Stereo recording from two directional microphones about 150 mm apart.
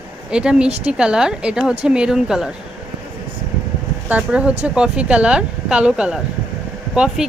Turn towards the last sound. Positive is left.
turn(degrees=-5)  # may be behind; listen again after turning